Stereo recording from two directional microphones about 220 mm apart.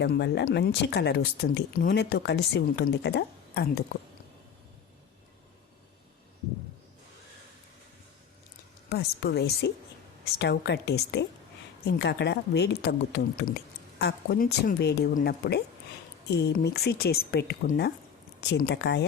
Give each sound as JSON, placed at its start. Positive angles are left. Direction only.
{"t": 0.0, "sound": "speech", "side_deg": 50}
{"t": 8.9, "sound": "speech", "side_deg": 45}